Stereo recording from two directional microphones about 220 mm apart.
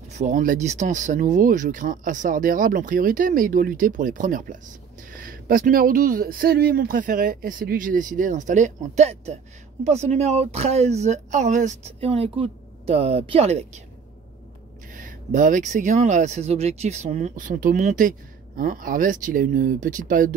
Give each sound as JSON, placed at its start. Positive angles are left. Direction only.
{"t": 0.1, "sound": "speech", "side_deg": -35}
{"t": 15.0, "sound": "speech", "side_deg": -35}